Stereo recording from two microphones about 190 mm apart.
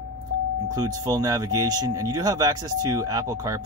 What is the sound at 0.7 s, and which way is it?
Speech, 20° right (ahead or behind).